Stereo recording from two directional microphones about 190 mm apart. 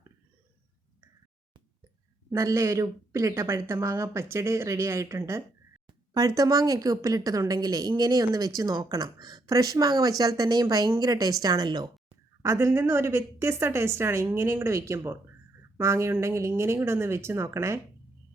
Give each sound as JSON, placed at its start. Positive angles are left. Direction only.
{"t": 2.3, "sound": "a woman's voice", "side_deg": -15}